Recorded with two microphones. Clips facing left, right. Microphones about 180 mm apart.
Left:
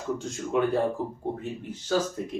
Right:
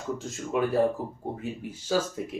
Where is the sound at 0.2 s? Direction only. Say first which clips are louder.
Left 1 dB; centre (ahead or behind).